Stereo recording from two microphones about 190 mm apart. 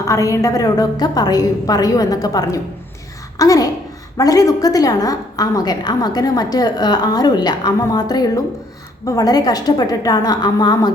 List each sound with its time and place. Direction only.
0.0 s a woman's voice: 15° left (ahead or behind)